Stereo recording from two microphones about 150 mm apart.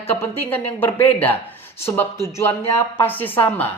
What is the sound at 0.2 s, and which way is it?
Speech, 15° left (ahead or behind).